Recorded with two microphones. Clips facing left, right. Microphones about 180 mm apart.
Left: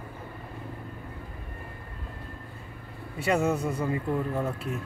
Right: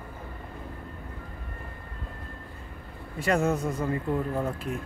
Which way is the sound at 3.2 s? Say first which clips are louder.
Even; 10° left (ahead or behind).